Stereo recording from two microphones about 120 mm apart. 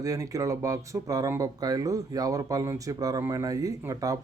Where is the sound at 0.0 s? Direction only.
30° right (ahead or behind).